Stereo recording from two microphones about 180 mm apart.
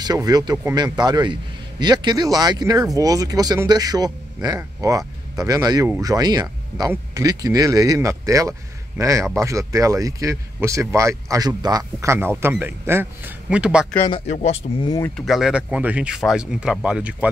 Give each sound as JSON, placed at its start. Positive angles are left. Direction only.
{"t": 0.0, "sound": "speech", "side_deg": -20}
{"t": 14.3, "sound": "speech", "side_deg": 35}
{"t": 14.9, "sound": "speech", "side_deg": 15}
{"t": 15.1, "sound": "speech", "side_deg": 0}